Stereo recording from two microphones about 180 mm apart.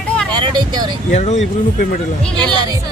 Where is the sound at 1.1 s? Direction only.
40° left (ahead or behind).